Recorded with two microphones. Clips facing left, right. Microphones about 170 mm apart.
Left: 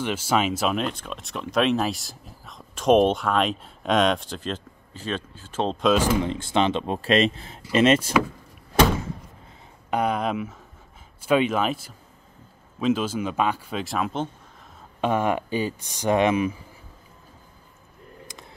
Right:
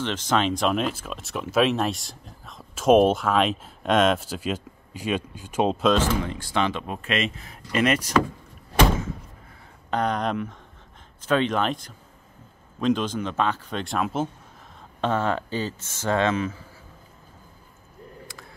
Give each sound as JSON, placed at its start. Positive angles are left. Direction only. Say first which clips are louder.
{"t": 0.0, "sound": "speech", "louder": "even", "side_deg": 10}
{"t": 5.9, "sound": "speech", "louder": "left 2 dB", "side_deg": 15}
{"t": 9.8, "sound": "speech", "louder": "left 1 dB", "side_deg": 10}
{"t": 15.0, "sound": "speech", "louder": "left 1 dB", "side_deg": 15}
{"t": 18.2, "sound": "a sound", "louder": "even", "side_deg": 20}